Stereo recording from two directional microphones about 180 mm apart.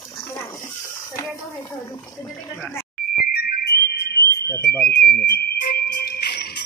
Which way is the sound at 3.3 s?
60° left (ahead or behind).